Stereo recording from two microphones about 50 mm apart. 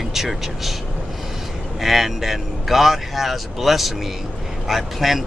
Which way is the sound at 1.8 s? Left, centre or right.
Centre.